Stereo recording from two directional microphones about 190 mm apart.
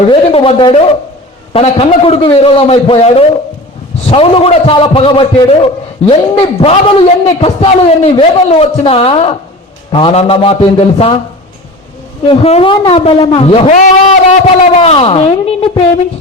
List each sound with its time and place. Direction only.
0.1 s a man's voice: 30° left (ahead or behind)
12.3 s a man's voice: 30° left (ahead or behind)